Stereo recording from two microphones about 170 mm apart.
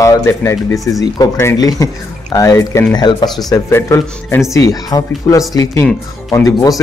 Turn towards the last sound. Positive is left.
turn(degrees=20)  # may be behind; listen again after turning